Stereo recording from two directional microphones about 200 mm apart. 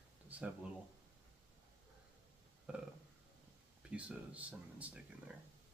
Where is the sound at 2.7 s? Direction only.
5° right (ahead or behind).